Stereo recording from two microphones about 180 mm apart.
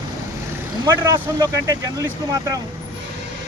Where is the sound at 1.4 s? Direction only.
20° right (ahead or behind).